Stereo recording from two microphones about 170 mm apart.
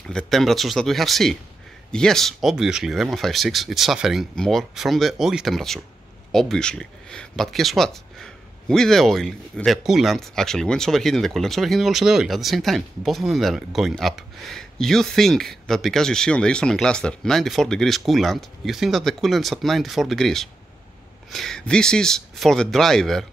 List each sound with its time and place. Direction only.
0.2 s speech: centre (ahead or behind)